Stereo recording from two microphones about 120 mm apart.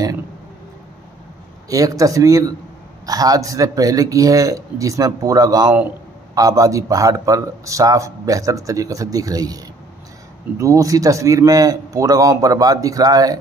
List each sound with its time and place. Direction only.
1.7 s speech: 30° right (ahead or behind)
10.6 s speech: 25° right (ahead or behind)